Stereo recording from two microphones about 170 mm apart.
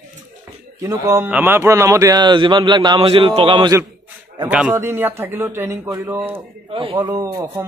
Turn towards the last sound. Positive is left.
turn(degrees=-15)  # may be behind; listen again after turning